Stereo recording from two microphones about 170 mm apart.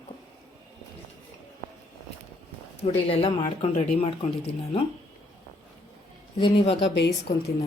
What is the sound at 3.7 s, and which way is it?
Speech, 45° left (ahead or behind).